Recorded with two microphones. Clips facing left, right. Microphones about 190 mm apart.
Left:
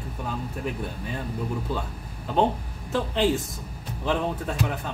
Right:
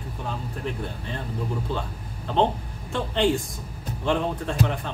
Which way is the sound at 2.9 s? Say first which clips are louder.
Even; 5° left (ahead or behind).